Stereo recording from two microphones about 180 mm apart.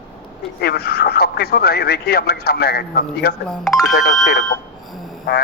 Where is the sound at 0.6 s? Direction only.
60° left (ahead or behind).